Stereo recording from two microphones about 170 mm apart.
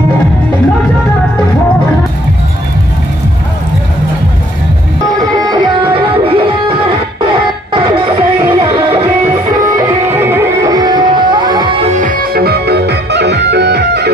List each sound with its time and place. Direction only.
5.3 s music: 25° right (ahead or behind)
10.0 s music: 15° right (ahead or behind)
10.7 s music: 25° right (ahead or behind)
12.0 s music: 55° right (ahead or behind); by 14.1 s 75° right (ahead or behind)